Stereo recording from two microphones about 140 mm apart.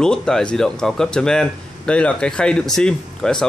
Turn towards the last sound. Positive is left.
turn(degrees=5)  # may be behind; listen again after turning